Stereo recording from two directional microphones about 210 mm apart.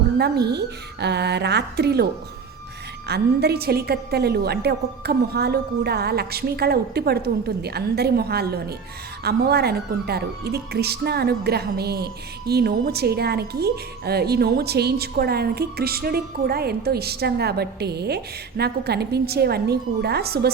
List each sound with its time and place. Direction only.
0.2 s a woman's voice: 50° right (ahead or behind)
3.1 s a woman's voice: 50° right (ahead or behind)